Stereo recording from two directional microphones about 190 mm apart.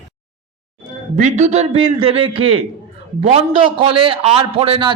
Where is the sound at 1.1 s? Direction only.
40° right (ahead or behind).